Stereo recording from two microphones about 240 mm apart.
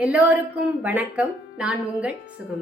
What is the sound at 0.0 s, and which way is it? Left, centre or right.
A woman's voice, centre.